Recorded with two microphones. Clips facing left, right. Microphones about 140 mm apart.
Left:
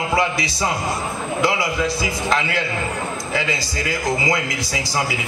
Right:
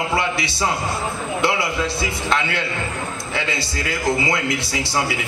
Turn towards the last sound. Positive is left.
turn(degrees=-25)  # may be behind; listen again after turning